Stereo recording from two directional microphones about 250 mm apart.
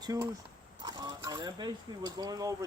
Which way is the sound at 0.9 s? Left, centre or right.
Centre.